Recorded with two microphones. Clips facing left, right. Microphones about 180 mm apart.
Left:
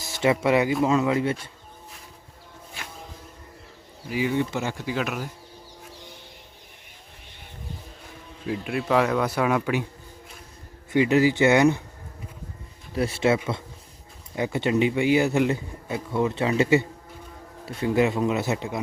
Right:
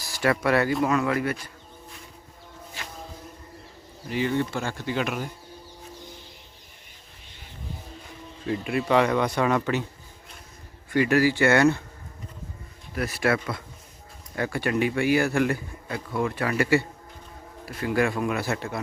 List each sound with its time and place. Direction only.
0.0 s a man's voice: 20° left (ahead or behind)
4.1 s speech: 10° left (ahead or behind)
8.4 s speech: centre (ahead or behind)
10.9 s speech: 20° left (ahead or behind)
12.9 s a man's voice: 25° left (ahead or behind)